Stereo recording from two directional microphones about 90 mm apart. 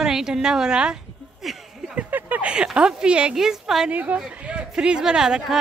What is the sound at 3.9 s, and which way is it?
Speech, 15° right (ahead or behind).